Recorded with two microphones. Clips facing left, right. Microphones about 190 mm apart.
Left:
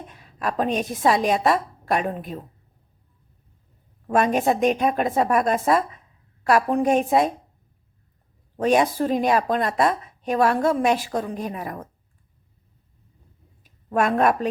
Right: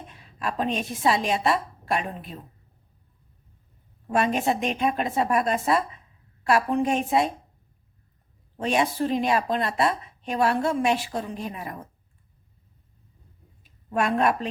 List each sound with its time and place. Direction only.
0.1 s a woman's voice: 45° left (ahead or behind)
4.1 s a woman's voice: 50° left (ahead or behind)
8.6 s a woman's voice: 45° left (ahead or behind)
13.9 s a woman's voice: 45° left (ahead or behind)